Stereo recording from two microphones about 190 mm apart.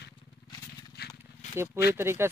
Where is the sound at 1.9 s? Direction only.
10° right (ahead or behind).